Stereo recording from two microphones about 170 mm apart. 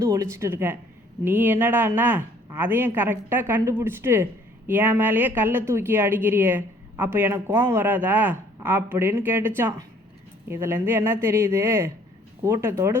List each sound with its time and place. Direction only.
0.0 s speech: 20° right (ahead or behind)